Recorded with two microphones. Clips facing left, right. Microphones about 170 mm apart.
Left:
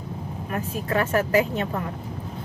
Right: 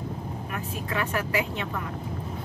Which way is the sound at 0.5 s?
40° left (ahead or behind).